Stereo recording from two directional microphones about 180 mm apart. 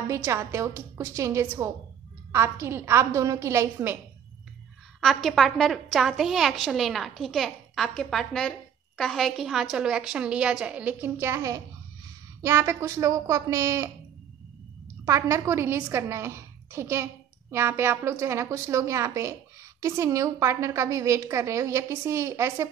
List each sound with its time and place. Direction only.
0.1 s a woman's voice: 15° right (ahead or behind)
5.0 s a woman's voice: centre (ahead or behind); by 13.8 s 15° right (ahead or behind)
15.0 s a woman's voice: 15° right (ahead or behind)